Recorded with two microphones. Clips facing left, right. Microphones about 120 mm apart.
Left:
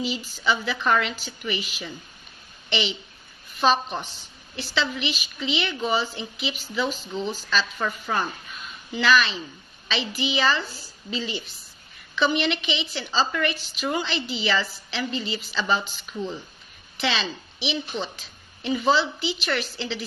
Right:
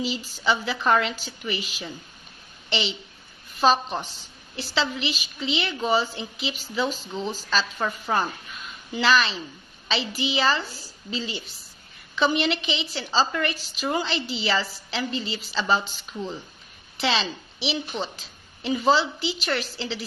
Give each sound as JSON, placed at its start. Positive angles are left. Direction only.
{"t": 0.0, "sound": "a woman's voice", "side_deg": -35}
{"t": 17.0, "sound": "a woman's voice", "side_deg": -30}